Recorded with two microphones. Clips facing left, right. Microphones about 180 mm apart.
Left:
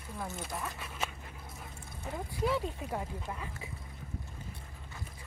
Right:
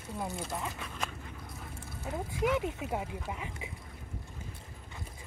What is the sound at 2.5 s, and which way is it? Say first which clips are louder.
Speech: right 2 dB; 15° right (ahead or behind).